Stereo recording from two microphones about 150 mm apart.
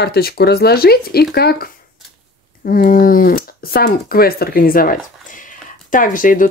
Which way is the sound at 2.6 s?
70° left (ahead or behind).